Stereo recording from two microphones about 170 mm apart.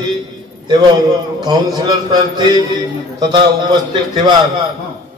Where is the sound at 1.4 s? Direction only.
25° right (ahead or behind).